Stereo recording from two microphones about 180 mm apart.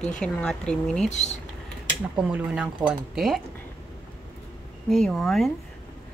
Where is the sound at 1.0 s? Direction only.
40° left (ahead or behind).